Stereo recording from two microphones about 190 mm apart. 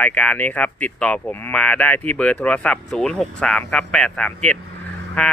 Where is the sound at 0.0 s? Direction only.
10° left (ahead or behind).